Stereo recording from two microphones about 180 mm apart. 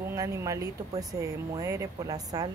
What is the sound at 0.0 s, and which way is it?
Speech, 15° right (ahead or behind).